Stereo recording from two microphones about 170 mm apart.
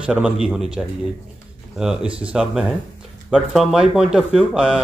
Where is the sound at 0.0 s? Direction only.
5° right (ahead or behind).